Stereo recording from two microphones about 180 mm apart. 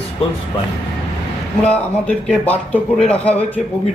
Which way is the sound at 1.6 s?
5° left (ahead or behind).